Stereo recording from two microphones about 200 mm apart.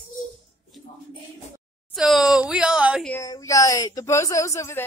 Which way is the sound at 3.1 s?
15° left (ahead or behind).